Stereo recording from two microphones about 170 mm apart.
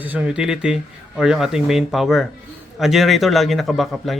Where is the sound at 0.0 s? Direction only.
10° right (ahead or behind).